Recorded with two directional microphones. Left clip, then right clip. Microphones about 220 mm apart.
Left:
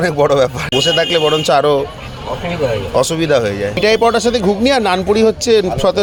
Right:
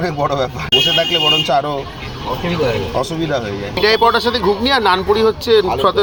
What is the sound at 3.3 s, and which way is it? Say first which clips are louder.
Speech: left 6 dB; 60° left (ahead or behind).